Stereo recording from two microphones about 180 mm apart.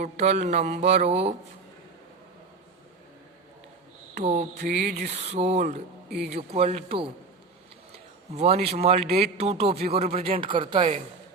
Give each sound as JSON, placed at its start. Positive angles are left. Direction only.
{"t": 0.0, "sound": "speech", "side_deg": -40}
{"t": 4.1, "sound": "mantra", "side_deg": -40}
{"t": 4.5, "sound": "mantra", "side_deg": -60}
{"t": 6.1, "sound": "a man's voice", "side_deg": 0}
{"t": 6.3, "sound": "speech", "side_deg": -35}